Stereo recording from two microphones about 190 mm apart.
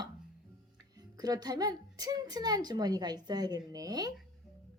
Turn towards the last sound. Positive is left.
turn(degrees=-20)  # may be behind; listen again after turning